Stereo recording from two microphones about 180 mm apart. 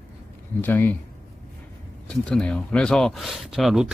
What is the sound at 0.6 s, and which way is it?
Speech, 10° left (ahead or behind).